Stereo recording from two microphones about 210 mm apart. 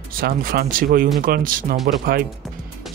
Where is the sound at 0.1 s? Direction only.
45° right (ahead or behind).